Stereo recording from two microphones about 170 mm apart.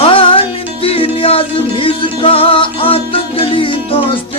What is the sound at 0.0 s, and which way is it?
Music, 30° left (ahead or behind).